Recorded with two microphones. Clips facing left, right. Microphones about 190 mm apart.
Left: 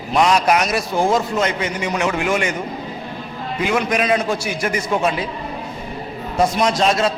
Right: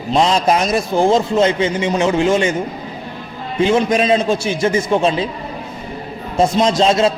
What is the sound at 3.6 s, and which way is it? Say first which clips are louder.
A man's voice: right 5 dB; 25° right (ahead or behind).